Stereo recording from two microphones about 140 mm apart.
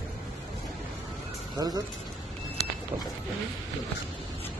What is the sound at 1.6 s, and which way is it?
Speech, 25° right (ahead or behind).